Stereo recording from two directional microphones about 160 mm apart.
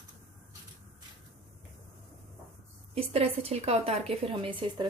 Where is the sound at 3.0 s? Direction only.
40° right (ahead or behind).